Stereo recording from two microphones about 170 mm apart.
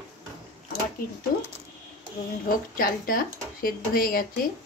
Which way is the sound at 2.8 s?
60° left (ahead or behind).